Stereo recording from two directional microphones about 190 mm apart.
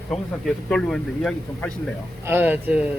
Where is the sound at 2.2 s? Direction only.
10° right (ahead or behind).